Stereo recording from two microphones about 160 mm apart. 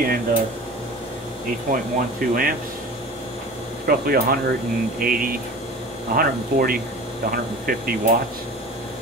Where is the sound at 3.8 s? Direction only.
65° right (ahead or behind).